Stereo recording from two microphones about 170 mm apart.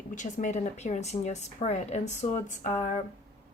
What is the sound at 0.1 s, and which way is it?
Speech, 45° left (ahead or behind).